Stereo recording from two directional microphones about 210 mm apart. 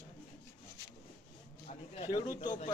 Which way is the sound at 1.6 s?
20° left (ahead or behind).